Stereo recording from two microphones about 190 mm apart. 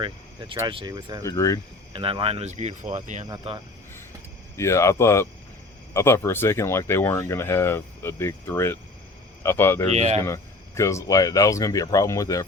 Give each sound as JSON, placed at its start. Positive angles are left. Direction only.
{"t": 0.7, "sound": "speech", "side_deg": -25}
{"t": 1.2, "sound": "speech", "side_deg": 15}
{"t": 1.9, "sound": "speech", "side_deg": -25}
{"t": 3.5, "sound": "speech", "side_deg": -30}
{"t": 4.5, "sound": "speech", "side_deg": 15}
{"t": 9.9, "sound": "speech", "side_deg": -35}
{"t": 10.2, "sound": "speech", "side_deg": 15}